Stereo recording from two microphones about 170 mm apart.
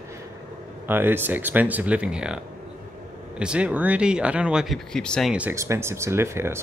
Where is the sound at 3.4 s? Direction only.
5° right (ahead or behind).